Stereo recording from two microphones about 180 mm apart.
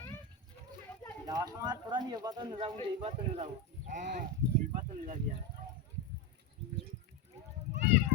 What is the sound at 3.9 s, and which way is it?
Speech, 45° right (ahead or behind).